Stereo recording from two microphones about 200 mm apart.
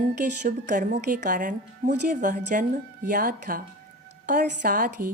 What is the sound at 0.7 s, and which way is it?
A woman's voice, 40° right (ahead or behind).